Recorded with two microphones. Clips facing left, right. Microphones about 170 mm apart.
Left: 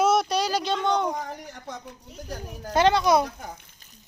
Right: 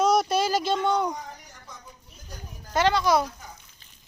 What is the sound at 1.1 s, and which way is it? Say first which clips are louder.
A woman's voice: left 6 dB; 75° left (ahead or behind).